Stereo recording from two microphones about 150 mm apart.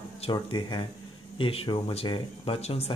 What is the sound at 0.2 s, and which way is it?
Speech, 30° left (ahead or behind).